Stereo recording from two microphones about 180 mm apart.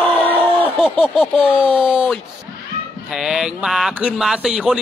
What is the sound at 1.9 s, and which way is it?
A man's voice, centre (ahead or behind).